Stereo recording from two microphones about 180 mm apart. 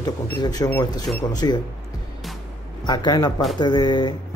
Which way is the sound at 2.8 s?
25° left (ahead or behind).